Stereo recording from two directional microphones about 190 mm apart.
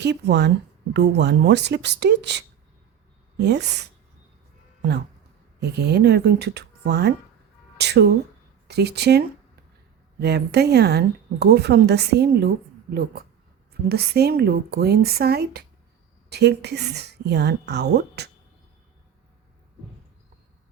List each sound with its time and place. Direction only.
0.0 s speech: 60° right (ahead or behind)
5.5 s speech: 60° right (ahead or behind)
13.8 s speech: 55° right (ahead or behind)